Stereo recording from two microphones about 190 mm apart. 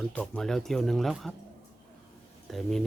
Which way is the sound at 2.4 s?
Centre (ahead or behind).